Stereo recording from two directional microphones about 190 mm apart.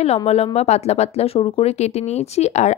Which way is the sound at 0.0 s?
35° left (ahead or behind).